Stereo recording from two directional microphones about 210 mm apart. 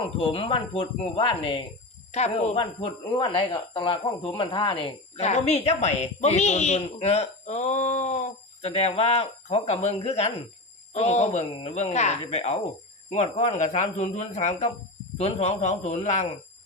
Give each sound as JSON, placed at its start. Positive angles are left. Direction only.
{"t": 0.0, "sound": "speech", "side_deg": 25}